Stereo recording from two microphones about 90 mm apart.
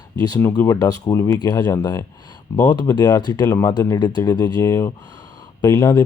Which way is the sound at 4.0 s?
50° left (ahead or behind).